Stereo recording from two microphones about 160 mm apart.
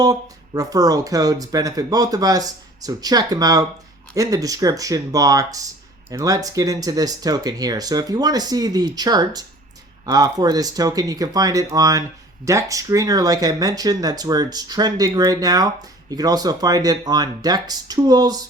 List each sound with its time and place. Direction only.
0.0 s speech: 25° right (ahead or behind)